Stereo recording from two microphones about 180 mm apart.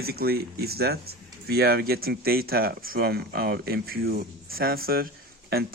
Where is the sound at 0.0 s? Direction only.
60° right (ahead or behind).